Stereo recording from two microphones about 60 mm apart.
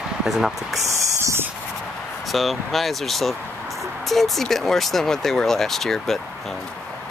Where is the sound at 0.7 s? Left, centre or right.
Right.